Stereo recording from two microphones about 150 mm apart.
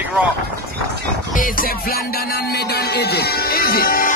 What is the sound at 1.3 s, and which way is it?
Music, 65° left (ahead or behind).